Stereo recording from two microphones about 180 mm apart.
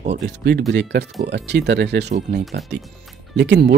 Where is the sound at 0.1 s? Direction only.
70° right (ahead or behind).